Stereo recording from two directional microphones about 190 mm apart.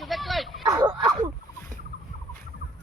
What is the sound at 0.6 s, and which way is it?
Speech, 20° right (ahead or behind).